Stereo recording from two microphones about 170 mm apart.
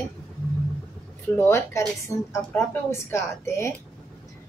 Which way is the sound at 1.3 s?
15° left (ahead or behind).